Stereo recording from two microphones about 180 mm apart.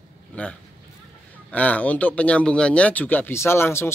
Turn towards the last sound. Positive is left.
turn(degrees=15)  # may be behind; listen again after turning